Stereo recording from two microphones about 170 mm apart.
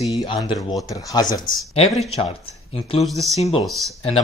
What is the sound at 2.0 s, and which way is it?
Speech, 35° left (ahead or behind).